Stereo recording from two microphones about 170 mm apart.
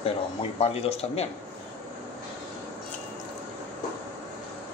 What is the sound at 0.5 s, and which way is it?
Speech, 35° left (ahead or behind).